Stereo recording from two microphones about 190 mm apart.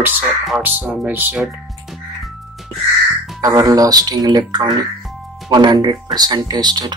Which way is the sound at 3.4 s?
20° right (ahead or behind).